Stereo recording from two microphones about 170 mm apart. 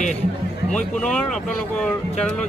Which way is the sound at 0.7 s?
5° left (ahead or behind).